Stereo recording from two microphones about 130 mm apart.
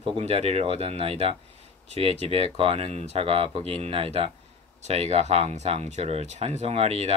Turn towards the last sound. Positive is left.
turn(degrees=-55)  # may be behind; listen again after turning